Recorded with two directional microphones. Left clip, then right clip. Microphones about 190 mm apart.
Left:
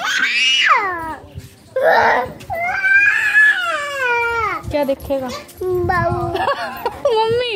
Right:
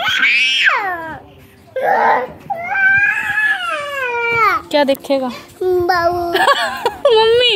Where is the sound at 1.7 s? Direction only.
40° right (ahead or behind).